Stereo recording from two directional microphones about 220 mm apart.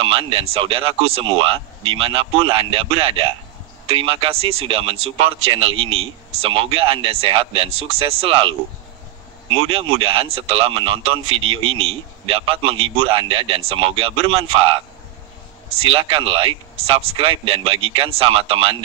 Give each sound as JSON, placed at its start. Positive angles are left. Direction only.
{"t": 0.0, "sound": "speech", "side_deg": -25}
{"t": 5.9, "sound": "a man's voice", "side_deg": -70}
{"t": 6.4, "sound": "speech", "side_deg": -25}
{"t": 9.5, "sound": "speech", "side_deg": -25}
{"t": 11.3, "sound": "a man's voice", "side_deg": -65}
{"t": 12.3, "sound": "speech", "side_deg": -25}
{"t": 15.9, "sound": "speech", "side_deg": -20}